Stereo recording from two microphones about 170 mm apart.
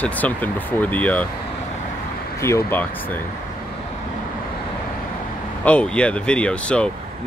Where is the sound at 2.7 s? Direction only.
10° left (ahead or behind).